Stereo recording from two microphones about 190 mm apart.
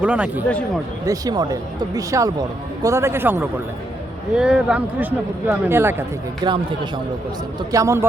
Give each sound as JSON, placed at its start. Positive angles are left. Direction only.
{"t": 0.0, "sound": "speech", "side_deg": -5}
{"t": 1.0, "sound": "speech", "side_deg": -20}
{"t": 6.4, "sound": "a man's voice", "side_deg": -25}